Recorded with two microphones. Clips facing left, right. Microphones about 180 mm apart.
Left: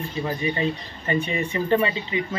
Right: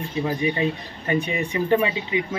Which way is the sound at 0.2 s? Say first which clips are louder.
Right 2 dB; 10° right (ahead or behind).